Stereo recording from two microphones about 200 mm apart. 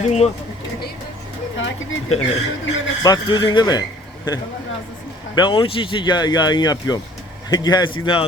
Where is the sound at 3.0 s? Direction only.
20° left (ahead or behind).